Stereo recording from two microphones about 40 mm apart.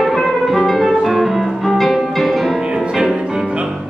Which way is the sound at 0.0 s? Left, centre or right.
Centre.